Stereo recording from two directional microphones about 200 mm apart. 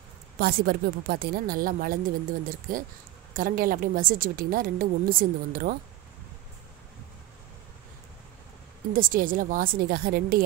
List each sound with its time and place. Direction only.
0.4 s a woman's voice: 50° right (ahead or behind)
3.3 s a woman's voice: 45° right (ahead or behind)
8.9 s a woman's voice: 45° right (ahead or behind)